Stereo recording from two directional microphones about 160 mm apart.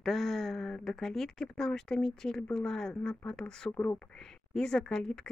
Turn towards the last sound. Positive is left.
turn(degrees=5)  # may be behind; listen again after turning